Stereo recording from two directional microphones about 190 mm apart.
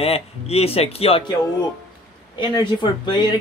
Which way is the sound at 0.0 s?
30° left (ahead or behind).